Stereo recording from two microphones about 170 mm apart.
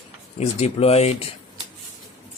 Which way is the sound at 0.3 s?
40° left (ahead or behind).